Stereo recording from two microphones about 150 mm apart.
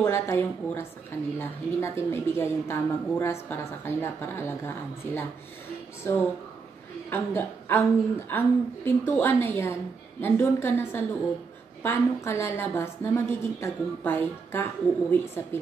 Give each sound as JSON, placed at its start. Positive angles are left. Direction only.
{"t": 0.0, "sound": "a woman's voice", "side_deg": 15}